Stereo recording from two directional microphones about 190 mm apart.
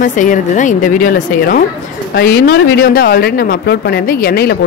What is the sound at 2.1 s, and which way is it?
Speech, 65° left (ahead or behind).